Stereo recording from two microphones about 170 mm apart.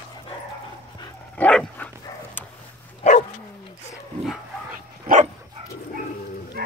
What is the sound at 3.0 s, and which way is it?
Dog, 45° left (ahead or behind).